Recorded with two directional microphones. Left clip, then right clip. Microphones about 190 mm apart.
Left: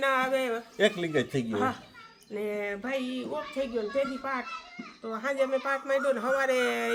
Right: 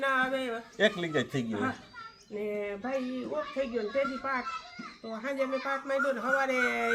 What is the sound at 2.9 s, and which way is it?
Speech, 20° left (ahead or behind).